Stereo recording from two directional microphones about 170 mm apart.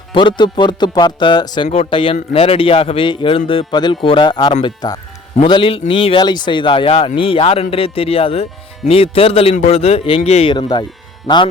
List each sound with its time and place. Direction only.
0.1 s speech: 30° left (ahead or behind)